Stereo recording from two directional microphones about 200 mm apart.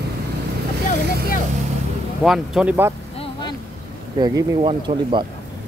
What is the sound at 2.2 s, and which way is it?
Speech, centre (ahead or behind).